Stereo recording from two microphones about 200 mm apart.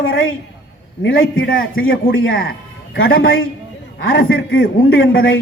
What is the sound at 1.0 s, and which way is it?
Speech, 75° left (ahead or behind).